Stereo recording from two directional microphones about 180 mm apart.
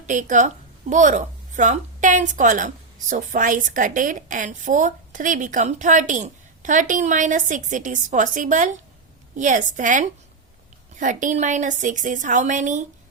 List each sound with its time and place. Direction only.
0.0 s a woman's voice: 45° right (ahead or behind)